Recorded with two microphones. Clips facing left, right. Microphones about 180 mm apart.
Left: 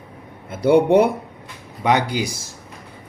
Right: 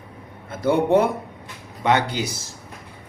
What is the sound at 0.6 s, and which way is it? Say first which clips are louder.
Speech: left 4 dB; 15° left (ahead or behind).